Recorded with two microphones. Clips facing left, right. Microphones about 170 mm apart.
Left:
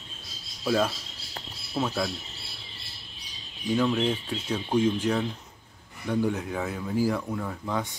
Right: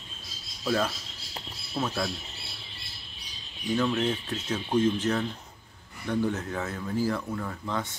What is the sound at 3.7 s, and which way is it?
Speech, 10° left (ahead or behind).